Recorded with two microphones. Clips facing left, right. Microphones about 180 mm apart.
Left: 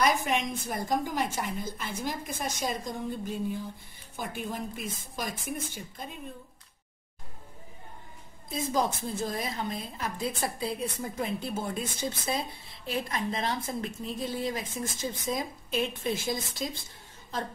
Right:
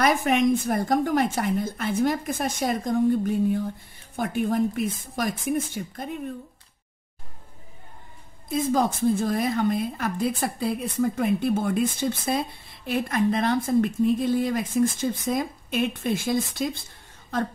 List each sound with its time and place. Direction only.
0.0 s a woman's voice: 65° right (ahead or behind)
8.7 s a woman's voice: 60° right (ahead or behind)